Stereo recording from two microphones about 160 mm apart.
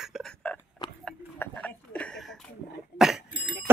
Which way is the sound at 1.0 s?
10° left (ahead or behind).